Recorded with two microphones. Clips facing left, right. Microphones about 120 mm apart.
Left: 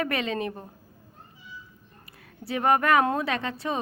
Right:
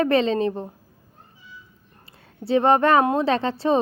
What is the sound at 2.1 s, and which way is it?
A woman's voice, 30° right (ahead or behind).